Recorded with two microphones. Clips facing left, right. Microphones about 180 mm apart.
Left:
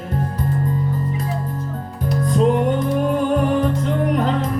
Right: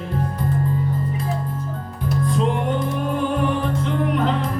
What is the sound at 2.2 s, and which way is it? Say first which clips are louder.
Music: left 6 dB; 40° left (ahead or behind).